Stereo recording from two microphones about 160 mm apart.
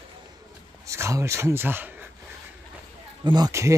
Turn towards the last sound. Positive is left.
turn(degrees=-20)  # may be behind; listen again after turning